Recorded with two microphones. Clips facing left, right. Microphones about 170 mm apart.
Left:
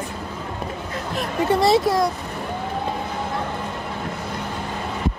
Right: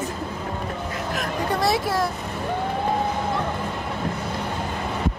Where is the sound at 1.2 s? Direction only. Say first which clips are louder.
Left 6 dB; 25° left (ahead or behind).